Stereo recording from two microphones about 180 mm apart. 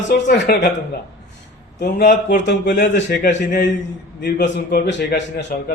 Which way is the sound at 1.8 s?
55° left (ahead or behind).